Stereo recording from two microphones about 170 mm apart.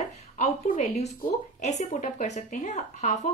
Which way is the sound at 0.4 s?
40° left (ahead or behind).